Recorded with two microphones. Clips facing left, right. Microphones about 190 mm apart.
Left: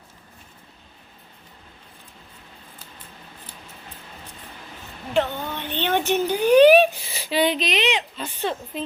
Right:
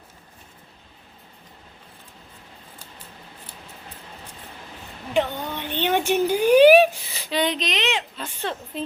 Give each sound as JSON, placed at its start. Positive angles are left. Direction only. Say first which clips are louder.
{"t": 5.1, "sound": "speech", "louder": "even", "side_deg": -10}
{"t": 7.1, "sound": "a woman's voice", "louder": "left 3 dB", "side_deg": 10}